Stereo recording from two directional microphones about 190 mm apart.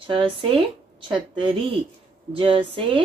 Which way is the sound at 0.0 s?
25° right (ahead or behind).